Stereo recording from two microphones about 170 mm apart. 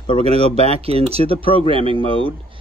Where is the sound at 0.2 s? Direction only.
35° right (ahead or behind).